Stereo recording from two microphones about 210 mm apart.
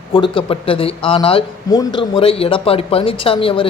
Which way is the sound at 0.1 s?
25° left (ahead or behind).